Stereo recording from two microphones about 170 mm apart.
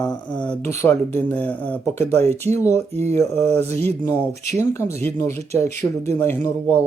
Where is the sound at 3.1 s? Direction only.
15° left (ahead or behind).